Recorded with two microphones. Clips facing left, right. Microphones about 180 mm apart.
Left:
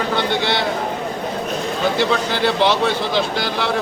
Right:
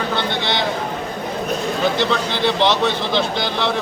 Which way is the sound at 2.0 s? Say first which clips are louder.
Left 1 dB; 10° left (ahead or behind).